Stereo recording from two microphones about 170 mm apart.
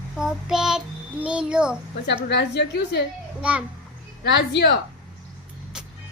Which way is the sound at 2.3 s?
90° left.